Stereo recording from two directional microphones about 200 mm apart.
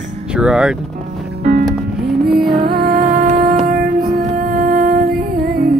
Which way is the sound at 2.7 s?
45° right (ahead or behind).